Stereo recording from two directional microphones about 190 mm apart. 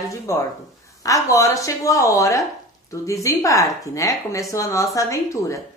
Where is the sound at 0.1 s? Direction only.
15° left (ahead or behind).